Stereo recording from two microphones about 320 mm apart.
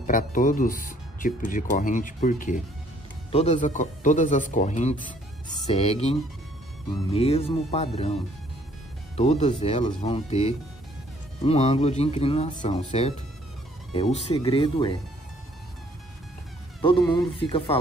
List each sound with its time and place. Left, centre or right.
0.0 s speech: left
9.1 s speech: left
16.8 s speech: centre